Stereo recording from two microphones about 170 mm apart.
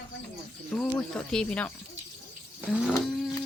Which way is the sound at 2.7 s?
Centre (ahead or behind).